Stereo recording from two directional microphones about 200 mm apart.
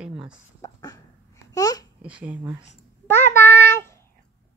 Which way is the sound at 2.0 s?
5° right (ahead or behind).